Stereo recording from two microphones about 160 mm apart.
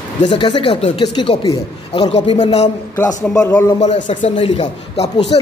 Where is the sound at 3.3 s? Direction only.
15° left (ahead or behind).